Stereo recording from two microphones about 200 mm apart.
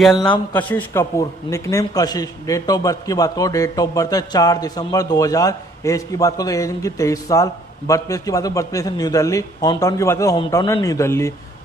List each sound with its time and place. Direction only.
0.5 s a man's voice: 10° left (ahead or behind)